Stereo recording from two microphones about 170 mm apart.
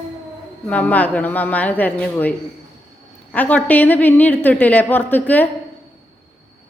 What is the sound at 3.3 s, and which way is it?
A woman's voice, 10° left (ahead or behind).